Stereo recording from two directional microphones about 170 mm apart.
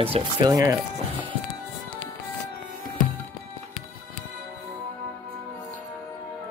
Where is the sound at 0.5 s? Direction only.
20° right (ahead or behind).